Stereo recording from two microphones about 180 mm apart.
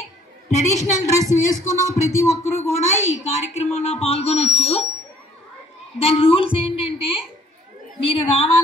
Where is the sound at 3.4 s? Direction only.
35° left (ahead or behind).